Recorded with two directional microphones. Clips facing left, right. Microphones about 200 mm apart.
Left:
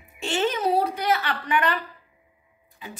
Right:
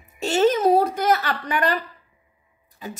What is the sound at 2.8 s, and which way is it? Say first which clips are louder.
Speech: right 5 dB; 40° right (ahead or behind).